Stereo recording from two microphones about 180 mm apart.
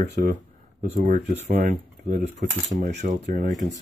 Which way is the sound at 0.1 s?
60° right (ahead or behind).